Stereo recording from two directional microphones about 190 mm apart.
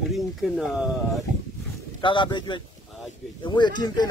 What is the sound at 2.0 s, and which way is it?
Speech, 25° left (ahead or behind).